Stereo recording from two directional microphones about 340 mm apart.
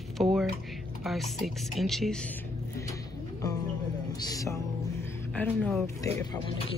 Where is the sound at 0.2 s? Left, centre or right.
Centre.